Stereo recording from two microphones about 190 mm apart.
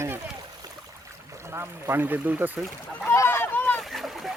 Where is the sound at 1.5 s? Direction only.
15° right (ahead or behind).